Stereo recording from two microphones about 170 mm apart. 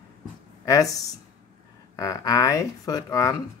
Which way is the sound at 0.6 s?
20° left (ahead or behind).